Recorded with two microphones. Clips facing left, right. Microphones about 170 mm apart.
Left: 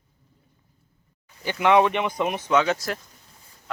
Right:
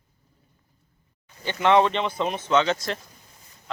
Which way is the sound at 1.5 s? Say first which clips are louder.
Left 1 dB; 15° left (ahead or behind).